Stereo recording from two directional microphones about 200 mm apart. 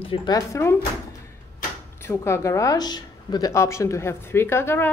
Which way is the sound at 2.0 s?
15° left (ahead or behind).